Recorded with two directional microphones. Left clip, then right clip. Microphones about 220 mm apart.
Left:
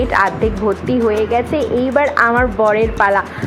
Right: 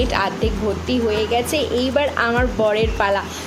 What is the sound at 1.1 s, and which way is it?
Speech, 35° left (ahead or behind).